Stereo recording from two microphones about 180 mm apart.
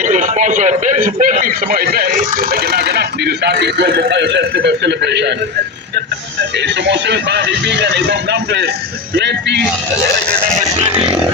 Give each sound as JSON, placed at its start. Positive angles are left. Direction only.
{"t": 0.0, "sound": "a man's voice", "side_deg": -45}
{"t": 6.6, "sound": "speech", "side_deg": -75}